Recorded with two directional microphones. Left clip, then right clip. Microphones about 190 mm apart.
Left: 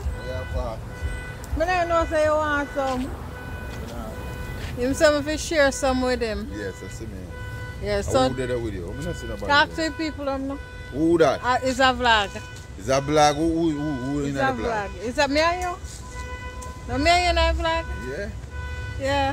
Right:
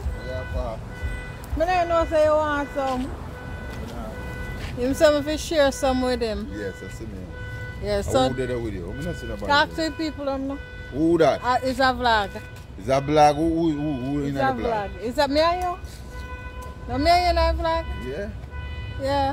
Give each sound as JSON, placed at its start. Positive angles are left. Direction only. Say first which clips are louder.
{"t": 1.6, "sound": "speech", "louder": "right 1 dB", "side_deg": 15}
{"t": 4.7, "sound": "speech", "louder": "right 1 dB", "side_deg": 5}
{"t": 7.8, "sound": "speech", "louder": "even", "side_deg": 10}
{"t": 8.3, "sound": "speech", "louder": "even", "side_deg": -15}
{"t": 9.5, "sound": "speech", "louder": "left 1 dB", "side_deg": 10}
{"t": 11.0, "sound": "speech", "louder": "even", "side_deg": -15}
{"t": 11.4, "sound": "speech", "louder": "left 1 dB", "side_deg": 15}
{"t": 12.8, "sound": "speech", "louder": "right 1 dB", "side_deg": -20}
{"t": 14.7, "sound": "speech", "louder": "right 1 dB", "side_deg": 10}
{"t": 16.9, "sound": "speech", "louder": "right 1 dB", "side_deg": 15}
{"t": 19.0, "sound": "speech", "louder": "even", "side_deg": 10}